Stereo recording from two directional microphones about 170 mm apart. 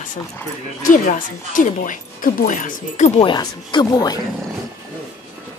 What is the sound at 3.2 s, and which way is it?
Speech, 25° left (ahead or behind).